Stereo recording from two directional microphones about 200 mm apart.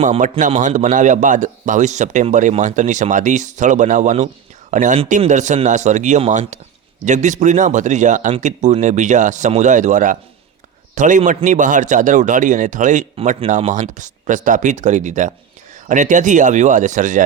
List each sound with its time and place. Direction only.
0.0 s a man's voice: 40° right (ahead or behind)